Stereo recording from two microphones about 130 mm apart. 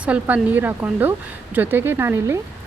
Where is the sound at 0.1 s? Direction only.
10° right (ahead or behind).